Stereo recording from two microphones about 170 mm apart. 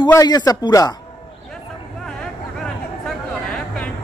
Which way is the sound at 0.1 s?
25° left (ahead or behind).